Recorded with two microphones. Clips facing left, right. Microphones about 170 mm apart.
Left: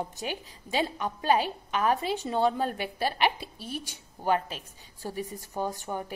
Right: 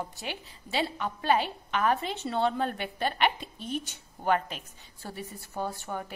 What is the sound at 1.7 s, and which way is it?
A woman's voice, 10° left (ahead or behind).